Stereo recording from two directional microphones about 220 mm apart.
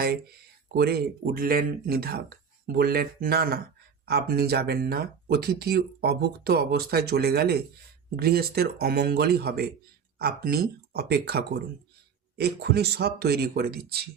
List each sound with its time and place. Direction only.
0.0 s speech: 45° right (ahead or behind)